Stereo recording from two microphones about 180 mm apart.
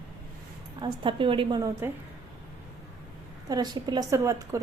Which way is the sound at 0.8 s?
25° right (ahead or behind).